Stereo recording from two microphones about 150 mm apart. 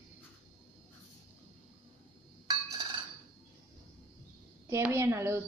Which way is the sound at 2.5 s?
25° right (ahead or behind).